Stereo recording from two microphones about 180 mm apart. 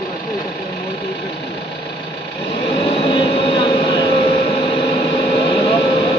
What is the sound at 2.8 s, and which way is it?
Vehicle, 30° left (ahead or behind).